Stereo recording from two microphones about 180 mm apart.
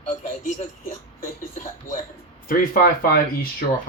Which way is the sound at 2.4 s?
50° left (ahead or behind).